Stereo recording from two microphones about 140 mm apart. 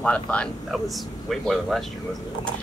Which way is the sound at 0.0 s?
10° left (ahead or behind).